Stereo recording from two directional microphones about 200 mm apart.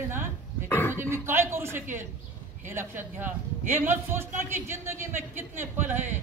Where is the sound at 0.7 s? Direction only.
10° left (ahead or behind).